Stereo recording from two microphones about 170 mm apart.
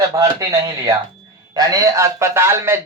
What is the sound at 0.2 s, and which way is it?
A man's voice, 20° right (ahead or behind).